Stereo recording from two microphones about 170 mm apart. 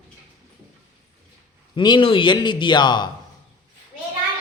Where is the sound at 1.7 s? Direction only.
25° left (ahead or behind).